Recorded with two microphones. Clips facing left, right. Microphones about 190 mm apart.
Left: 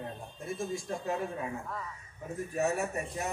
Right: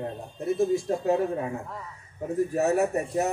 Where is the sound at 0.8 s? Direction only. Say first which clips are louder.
Right 9 dB; 35° right (ahead or behind).